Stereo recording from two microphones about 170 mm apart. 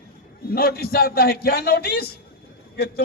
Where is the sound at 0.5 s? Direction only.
65° left (ahead or behind).